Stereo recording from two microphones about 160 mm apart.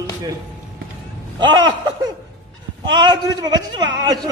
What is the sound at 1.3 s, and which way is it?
A man's voice, 30° right (ahead or behind).